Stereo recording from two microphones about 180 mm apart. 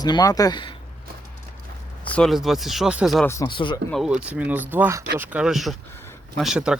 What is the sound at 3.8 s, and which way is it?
Speech, centre (ahead or behind).